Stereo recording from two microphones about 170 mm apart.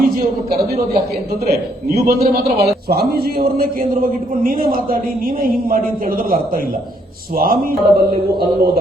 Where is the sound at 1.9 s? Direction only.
65° right (ahead or behind).